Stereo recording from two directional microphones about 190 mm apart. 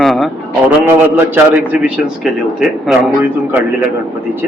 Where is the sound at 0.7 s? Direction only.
10° right (ahead or behind).